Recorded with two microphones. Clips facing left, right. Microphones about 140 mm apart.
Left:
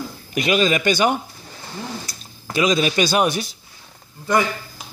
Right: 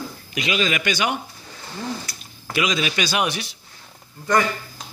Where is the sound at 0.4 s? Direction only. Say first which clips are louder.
Left 5 dB; 45° left (ahead or behind).